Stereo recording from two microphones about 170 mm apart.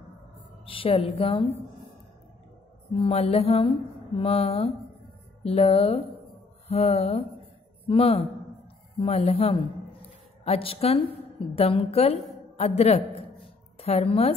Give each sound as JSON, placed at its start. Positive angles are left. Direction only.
{"t": 0.7, "sound": "a woman's voice", "side_deg": 30}
{"t": 2.9, "sound": "a woman's voice", "side_deg": 35}
{"t": 12.5, "sound": "a sound", "side_deg": 40}
{"t": 13.7, "sound": "a woman's voice", "side_deg": 35}